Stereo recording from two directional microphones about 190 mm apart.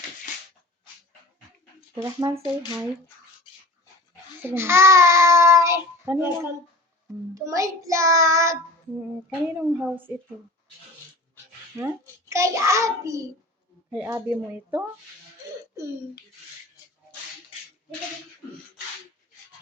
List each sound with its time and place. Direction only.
2.0 s child singing: 20° right (ahead or behind)
4.4 s child singing: 15° right (ahead or behind)
9.6 s child singing: 10° right (ahead or behind)
11.8 s child singing: 15° right (ahead or behind)